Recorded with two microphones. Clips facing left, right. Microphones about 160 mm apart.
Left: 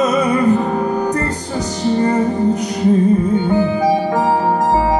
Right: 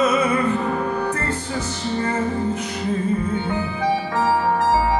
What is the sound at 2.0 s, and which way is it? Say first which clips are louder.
Music: left 6 dB; 40° left (ahead or behind).